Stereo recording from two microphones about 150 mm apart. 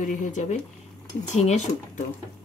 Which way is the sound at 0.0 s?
60° left (ahead or behind).